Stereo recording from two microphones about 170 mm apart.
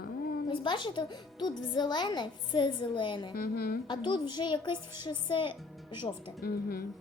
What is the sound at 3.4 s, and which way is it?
Speech, 60° left (ahead or behind).